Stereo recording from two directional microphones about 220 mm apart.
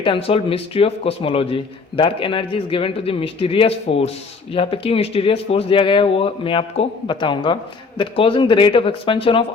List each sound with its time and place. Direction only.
0.0 s speech: 25° left (ahead or behind)